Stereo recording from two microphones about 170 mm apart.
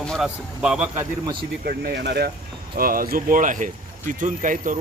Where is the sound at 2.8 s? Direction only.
55° right (ahead or behind).